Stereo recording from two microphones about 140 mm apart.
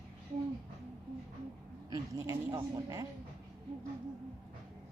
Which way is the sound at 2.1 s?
25° right (ahead or behind).